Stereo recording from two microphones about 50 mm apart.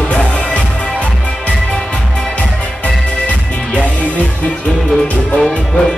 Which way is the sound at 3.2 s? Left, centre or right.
Left.